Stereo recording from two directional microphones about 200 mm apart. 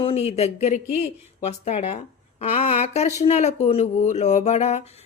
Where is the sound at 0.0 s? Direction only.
30° left (ahead or behind).